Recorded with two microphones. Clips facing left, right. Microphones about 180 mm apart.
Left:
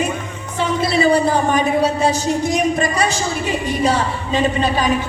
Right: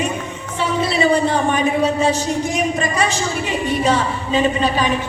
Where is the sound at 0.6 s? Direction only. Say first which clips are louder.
Left 1 dB; 35° left (ahead or behind).